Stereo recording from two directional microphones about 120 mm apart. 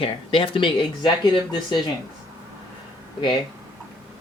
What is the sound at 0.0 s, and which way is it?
Speech, 50° left (ahead or behind).